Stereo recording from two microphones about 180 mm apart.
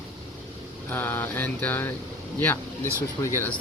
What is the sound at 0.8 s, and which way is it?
Speech, 10° left (ahead or behind).